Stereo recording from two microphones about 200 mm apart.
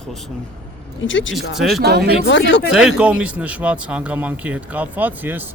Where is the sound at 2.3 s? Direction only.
65° left (ahead or behind).